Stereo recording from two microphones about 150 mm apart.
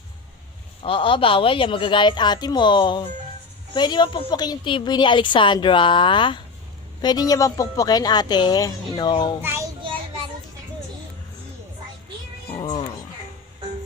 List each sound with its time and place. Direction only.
0.9 s a woman's voice: 35° left (ahead or behind)
9.4 s a child's voice: 15° right (ahead or behind)